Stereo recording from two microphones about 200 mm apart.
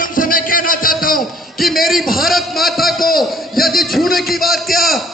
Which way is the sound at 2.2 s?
Centre (ahead or behind).